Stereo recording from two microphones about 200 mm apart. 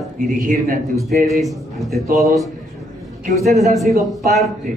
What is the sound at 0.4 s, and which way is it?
Speech, 45° right (ahead or behind).